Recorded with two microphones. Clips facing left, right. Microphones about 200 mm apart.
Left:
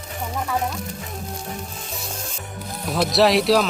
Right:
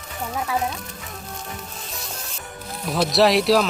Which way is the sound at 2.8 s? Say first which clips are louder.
Even; centre (ahead or behind).